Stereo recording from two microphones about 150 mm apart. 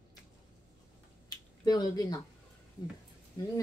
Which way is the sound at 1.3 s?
25° left (ahead or behind).